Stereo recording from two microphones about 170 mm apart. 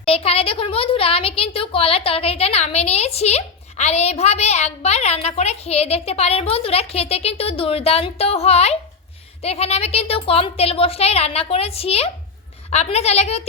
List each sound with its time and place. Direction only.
0.0 s a woman's voice: 35° left (ahead or behind)